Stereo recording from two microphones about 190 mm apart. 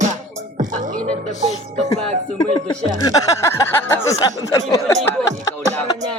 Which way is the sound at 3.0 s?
15° left (ahead or behind).